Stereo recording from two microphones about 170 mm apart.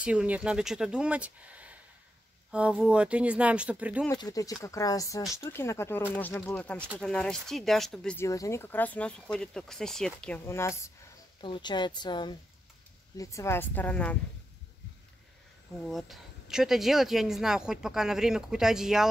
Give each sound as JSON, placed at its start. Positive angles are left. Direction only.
{"t": 0.0, "sound": "speech", "side_deg": -5}
{"t": 4.1, "sound": "speech", "side_deg": 20}
{"t": 8.2, "sound": "speech", "side_deg": 20}
{"t": 10.4, "sound": "speech", "side_deg": 15}
{"t": 11.4, "sound": "speech", "side_deg": 30}
{"t": 15.9, "sound": "speech", "side_deg": 0}